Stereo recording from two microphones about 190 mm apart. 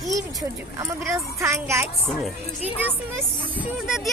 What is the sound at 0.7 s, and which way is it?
Speech, 15° right (ahead or behind).